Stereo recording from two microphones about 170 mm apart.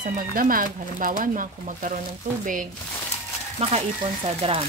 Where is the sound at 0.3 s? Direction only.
55° right (ahead or behind).